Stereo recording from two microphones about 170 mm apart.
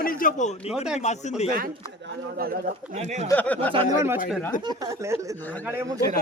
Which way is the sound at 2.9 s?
45° right (ahead or behind).